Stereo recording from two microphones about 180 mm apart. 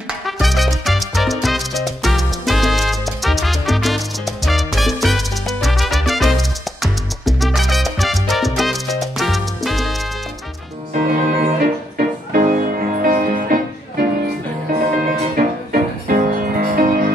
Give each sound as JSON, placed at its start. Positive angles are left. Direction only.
{"t": 0.4, "sound": "music", "side_deg": 0}
{"t": 4.5, "sound": "salsa music", "side_deg": 0}
{"t": 11.0, "sound": "music", "side_deg": -50}
{"t": 15.3, "sound": "music", "side_deg": -50}